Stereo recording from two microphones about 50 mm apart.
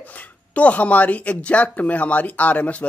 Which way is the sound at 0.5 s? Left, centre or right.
Left.